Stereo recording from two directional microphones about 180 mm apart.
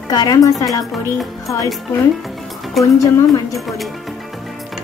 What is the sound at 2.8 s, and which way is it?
Speech, 20° left (ahead or behind).